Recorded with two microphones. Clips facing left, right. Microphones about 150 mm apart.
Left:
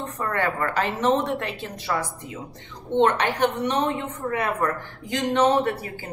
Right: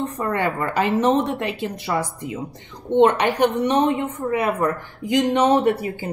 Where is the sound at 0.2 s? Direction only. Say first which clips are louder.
Right 1 dB; 15° right (ahead or behind).